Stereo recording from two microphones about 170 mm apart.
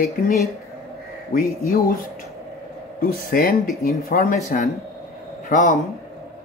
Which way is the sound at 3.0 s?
55° left (ahead or behind).